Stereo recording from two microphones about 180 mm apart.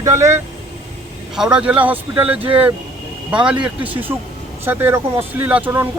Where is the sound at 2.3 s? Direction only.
30° right (ahead or behind).